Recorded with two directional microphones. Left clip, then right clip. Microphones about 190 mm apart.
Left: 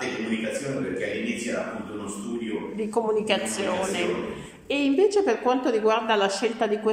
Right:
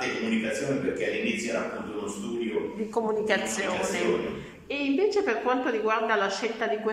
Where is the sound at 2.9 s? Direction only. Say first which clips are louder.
Left 2 dB; 10° left (ahead or behind).